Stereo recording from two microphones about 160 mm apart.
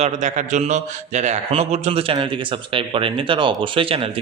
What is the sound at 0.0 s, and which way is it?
A man's voice, 50° right (ahead or behind).